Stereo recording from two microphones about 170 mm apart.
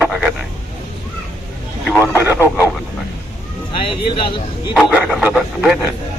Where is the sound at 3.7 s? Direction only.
30° left (ahead or behind).